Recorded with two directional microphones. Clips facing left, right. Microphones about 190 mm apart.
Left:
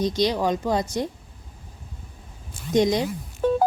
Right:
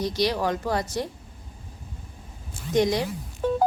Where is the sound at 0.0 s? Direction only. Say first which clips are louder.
Left 2 dB; 20° left (ahead or behind).